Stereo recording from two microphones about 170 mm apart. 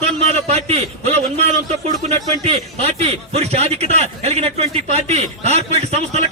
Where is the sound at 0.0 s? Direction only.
40° right (ahead or behind).